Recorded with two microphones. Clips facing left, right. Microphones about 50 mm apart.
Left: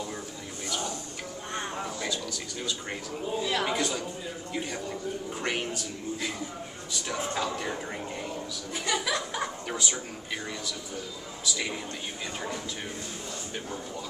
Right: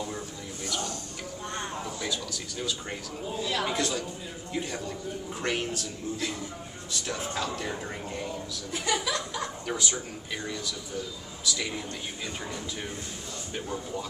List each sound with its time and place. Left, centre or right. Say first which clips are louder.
1.5 s a sound: left 2 dB; centre
2.6 s speech: right 1 dB; centre
8.7 s speech: even; centre